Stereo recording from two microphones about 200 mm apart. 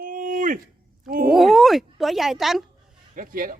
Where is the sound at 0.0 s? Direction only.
45° right (ahead or behind).